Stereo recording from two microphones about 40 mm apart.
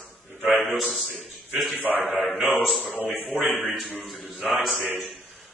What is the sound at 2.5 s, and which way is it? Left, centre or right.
Speech, centre.